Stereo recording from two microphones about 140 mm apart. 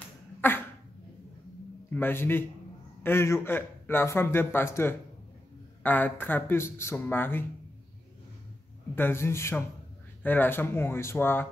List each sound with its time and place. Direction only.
0.4 s cough: 15° left (ahead or behind)
1.9 s a man's voice: 15° left (ahead or behind)
8.9 s a man's voice: 15° left (ahead or behind)